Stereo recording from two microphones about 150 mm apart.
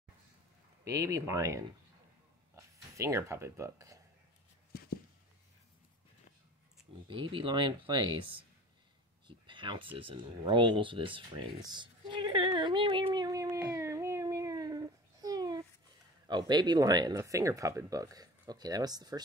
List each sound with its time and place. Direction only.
0.8 s speech: 20° right (ahead or behind)
2.5 s a sound: 20° right (ahead or behind)
7.1 s speech: 35° right (ahead or behind)
9.5 s speech: 30° right (ahead or behind)
13.1 s cat: 25° right (ahead or behind)
16.3 s speech: 30° right (ahead or behind)